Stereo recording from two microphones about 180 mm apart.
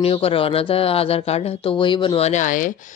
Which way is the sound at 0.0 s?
30° left (ahead or behind).